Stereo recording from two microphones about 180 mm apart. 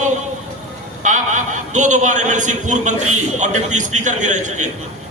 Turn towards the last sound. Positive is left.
turn(degrees=-40)  # may be behind; listen again after turning